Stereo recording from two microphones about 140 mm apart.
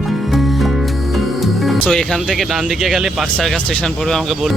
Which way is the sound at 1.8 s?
5° left (ahead or behind).